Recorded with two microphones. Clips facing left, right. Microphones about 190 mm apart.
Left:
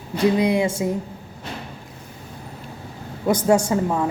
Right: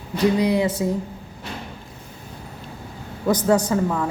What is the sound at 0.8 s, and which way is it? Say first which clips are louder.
Speech: even; 20° left (ahead or behind).